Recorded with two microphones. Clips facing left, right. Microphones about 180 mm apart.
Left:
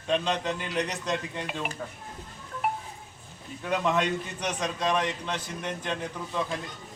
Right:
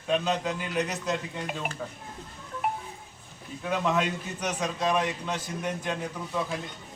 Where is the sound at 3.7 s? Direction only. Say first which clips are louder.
Left 1 dB; 5° right (ahead or behind).